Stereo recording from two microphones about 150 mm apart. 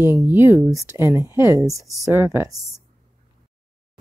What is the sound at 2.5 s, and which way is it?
Speech, 20° left (ahead or behind).